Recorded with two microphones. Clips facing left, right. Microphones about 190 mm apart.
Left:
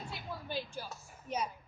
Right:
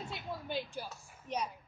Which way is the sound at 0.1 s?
20° right (ahead or behind).